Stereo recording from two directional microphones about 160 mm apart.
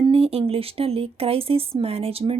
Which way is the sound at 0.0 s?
35° right (ahead or behind).